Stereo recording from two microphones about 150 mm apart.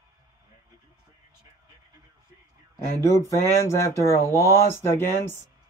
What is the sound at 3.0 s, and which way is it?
Speech, 20° left (ahead or behind).